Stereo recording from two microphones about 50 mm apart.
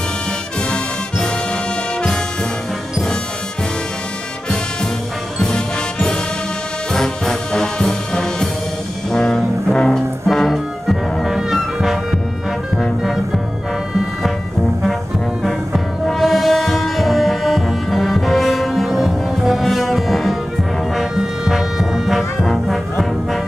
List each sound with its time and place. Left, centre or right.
0.7 s music: centre
5.4 s music: centre
9.1 s brass instrument: centre
10.2 s music: centre
11.2 s music: centre
15.4 s music: centre
20.9 s brass instrument: centre